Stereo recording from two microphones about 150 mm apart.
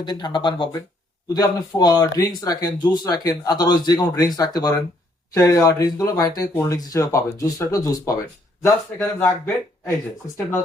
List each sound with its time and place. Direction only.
0.0 s speech: 30° left (ahead or behind)